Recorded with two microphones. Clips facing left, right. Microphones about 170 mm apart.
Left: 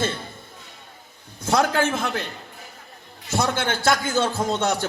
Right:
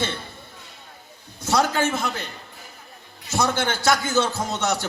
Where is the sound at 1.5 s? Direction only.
55° left (ahead or behind).